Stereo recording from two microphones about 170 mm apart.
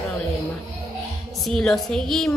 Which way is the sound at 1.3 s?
Centre (ahead or behind).